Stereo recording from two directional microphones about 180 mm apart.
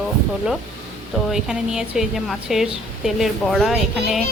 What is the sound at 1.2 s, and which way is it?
A woman's voice, centre (ahead or behind).